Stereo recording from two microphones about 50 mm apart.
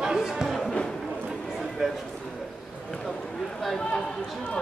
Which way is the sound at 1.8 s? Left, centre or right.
Centre.